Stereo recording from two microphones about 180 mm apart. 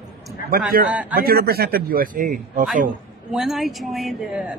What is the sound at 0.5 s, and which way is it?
Speech, 50° right (ahead or behind).